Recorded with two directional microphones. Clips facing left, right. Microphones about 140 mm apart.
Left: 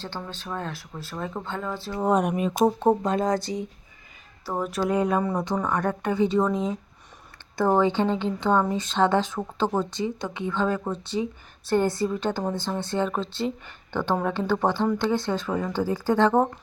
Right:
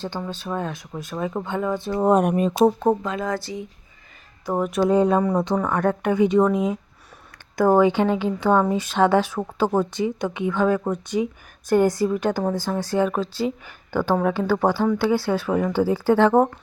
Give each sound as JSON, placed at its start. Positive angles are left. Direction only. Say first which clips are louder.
{"t": 0.0, "sound": "speech", "louder": "right 6 dB", "side_deg": -10}
{"t": 1.9, "sound": "speech", "louder": "right 4 dB", "side_deg": -45}
{"t": 2.6, "sound": "speech", "louder": "right 1 dB", "side_deg": -5}
{"t": 3.5, "sound": "speech", "louder": "left 1 dB", "side_deg": 35}
{"t": 4.4, "sound": "speech", "louder": "right 5 dB", "side_deg": -15}
{"t": 4.8, "sound": "speech", "louder": "right 5 dB", "side_deg": -30}
{"t": 5.6, "sound": "speech", "louder": "right 4 dB", "side_deg": -10}